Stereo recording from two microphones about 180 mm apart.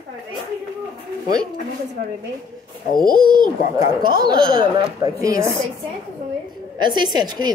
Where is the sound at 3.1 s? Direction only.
25° right (ahead or behind).